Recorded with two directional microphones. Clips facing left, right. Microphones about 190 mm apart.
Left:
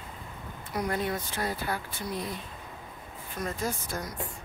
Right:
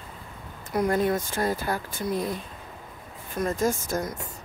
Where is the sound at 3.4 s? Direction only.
45° right (ahead or behind).